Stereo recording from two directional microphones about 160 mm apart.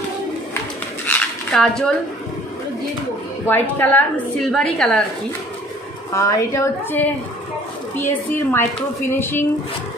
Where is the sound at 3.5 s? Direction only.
10° left (ahead or behind).